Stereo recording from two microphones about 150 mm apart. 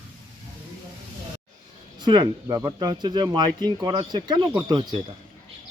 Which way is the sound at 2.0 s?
30° right (ahead or behind).